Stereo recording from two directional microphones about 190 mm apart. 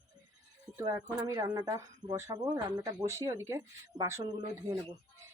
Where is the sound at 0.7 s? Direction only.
15° right (ahead or behind).